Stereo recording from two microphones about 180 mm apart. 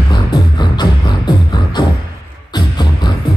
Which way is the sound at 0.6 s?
25° left (ahead or behind).